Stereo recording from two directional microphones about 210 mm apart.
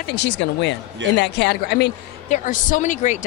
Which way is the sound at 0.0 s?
55° left (ahead or behind).